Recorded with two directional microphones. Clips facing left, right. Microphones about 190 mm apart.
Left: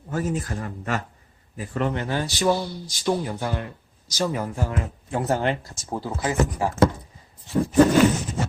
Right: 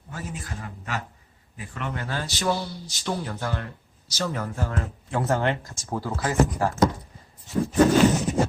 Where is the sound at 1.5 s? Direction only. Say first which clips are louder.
Left 8 dB; 35° left (ahead or behind).